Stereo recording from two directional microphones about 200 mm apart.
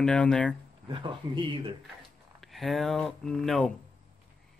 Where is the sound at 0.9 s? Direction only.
25° right (ahead or behind).